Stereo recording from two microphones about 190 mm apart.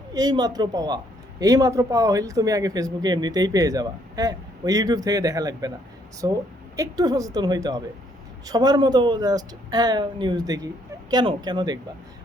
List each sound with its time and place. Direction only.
0.1 s a man's voice: 20° right (ahead or behind)